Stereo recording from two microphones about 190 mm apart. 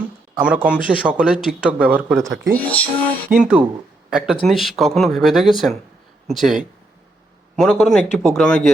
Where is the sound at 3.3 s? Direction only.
5° right (ahead or behind).